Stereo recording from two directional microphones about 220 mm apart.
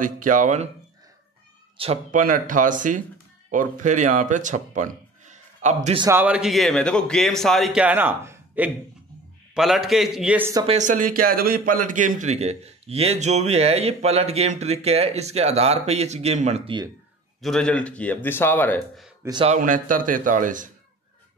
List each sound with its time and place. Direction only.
0.0 s a man's voice: 35° right (ahead or behind)
1.8 s a man's voice: 25° right (ahead or behind)
6.0 s a man's voice: 10° right (ahead or behind)
10.7 s a man's voice: 35° right (ahead or behind)
17.4 s a man's voice: 5° left (ahead or behind)
19.2 s a man's voice: 20° right (ahead or behind)
19.5 s a man's voice: 35° right (ahead or behind)